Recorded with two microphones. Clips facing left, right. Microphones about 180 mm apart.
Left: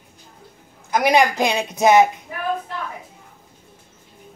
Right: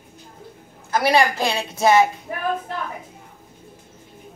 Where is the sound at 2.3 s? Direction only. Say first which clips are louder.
Right 1 dB; 50° right (ahead or behind).